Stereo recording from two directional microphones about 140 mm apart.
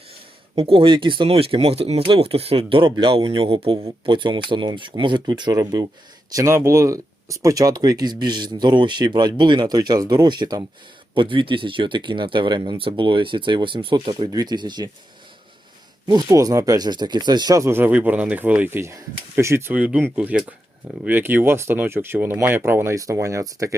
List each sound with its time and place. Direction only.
0.5 s speech: 40° right (ahead or behind)
16.0 s speech: 25° right (ahead or behind)